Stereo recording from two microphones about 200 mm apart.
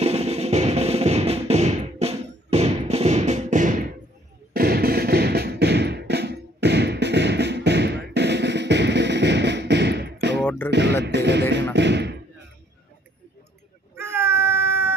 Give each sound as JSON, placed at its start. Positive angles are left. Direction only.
{"t": 0.0, "sound": "music", "side_deg": -30}
{"t": 4.6, "sound": "beatboxing", "side_deg": -50}
{"t": 10.7, "sound": "music", "side_deg": -60}
{"t": 11.7, "sound": "a sound", "side_deg": -60}
{"t": 13.9, "sound": "child singing", "side_deg": -10}